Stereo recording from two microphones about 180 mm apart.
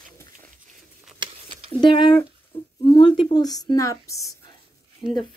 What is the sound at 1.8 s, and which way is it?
Speech, 30° left (ahead or behind).